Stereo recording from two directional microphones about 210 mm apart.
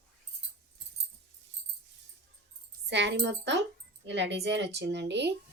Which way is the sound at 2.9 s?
55° right (ahead or behind).